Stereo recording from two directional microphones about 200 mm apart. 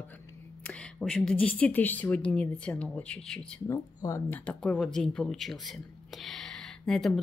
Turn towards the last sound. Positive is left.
turn(degrees=0)  # may be behind; listen again after turning